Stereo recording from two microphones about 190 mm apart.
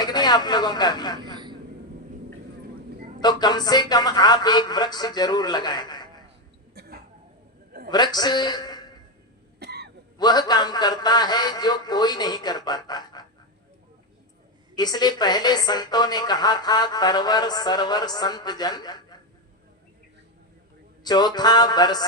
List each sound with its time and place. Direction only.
0.0 s speech: 20° left (ahead or behind)
1.2 s vehicle: 25° right (ahead or behind)
3.2 s speech: 20° left (ahead or behind)
6.7 s a sound: 55° right (ahead or behind)
7.9 s speech: 20° left (ahead or behind)
9.6 s cough: 60° right (ahead or behind)
10.2 s speech: 20° left (ahead or behind)
14.8 s speech: 20° left (ahead or behind)
21.0 s speech: 20° left (ahead or behind)